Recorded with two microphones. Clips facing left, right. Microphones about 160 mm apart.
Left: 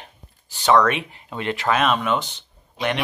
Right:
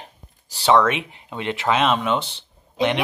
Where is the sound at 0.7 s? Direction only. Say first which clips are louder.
Even; 20° right (ahead or behind).